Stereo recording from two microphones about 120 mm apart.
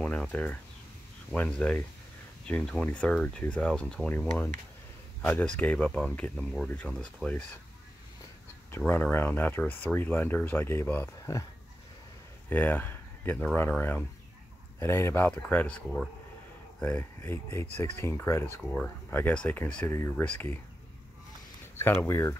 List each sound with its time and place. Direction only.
0.0 s speech: 10° left (ahead or behind)
5.2 s speech: 10° left (ahead or behind)
8.7 s speech: 20° left (ahead or behind)
11.1 s speech: 30° left (ahead or behind)
12.4 s speech: 15° left (ahead or behind)
18.6 s speech: 10° left (ahead or behind)
19.9 s speech: 25° left (ahead or behind)
20.2 s speech: 10° left (ahead or behind)
21.7 s speech: 20° left (ahead or behind)